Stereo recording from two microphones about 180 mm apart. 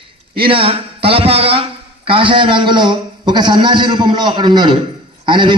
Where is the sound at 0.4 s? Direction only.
30° right (ahead or behind).